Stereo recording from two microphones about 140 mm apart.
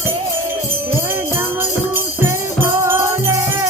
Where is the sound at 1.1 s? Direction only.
15° right (ahead or behind).